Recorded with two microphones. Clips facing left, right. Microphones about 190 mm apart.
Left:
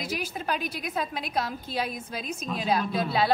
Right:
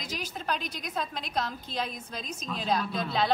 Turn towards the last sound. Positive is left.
turn(degrees=5)  # may be behind; listen again after turning